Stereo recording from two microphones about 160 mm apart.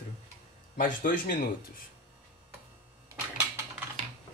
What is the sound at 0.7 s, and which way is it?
Speech, 60° left (ahead or behind).